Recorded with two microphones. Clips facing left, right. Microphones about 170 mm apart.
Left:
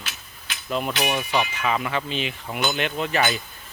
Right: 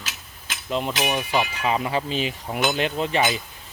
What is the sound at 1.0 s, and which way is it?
Speech, 5° right (ahead or behind).